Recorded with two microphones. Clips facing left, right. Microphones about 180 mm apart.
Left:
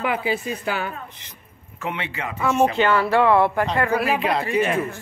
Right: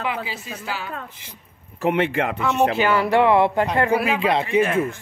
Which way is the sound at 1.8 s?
45° right (ahead or behind).